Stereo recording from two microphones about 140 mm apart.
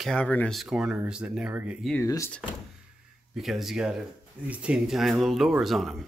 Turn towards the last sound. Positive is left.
turn(degrees=0)  # may be behind; listen again after turning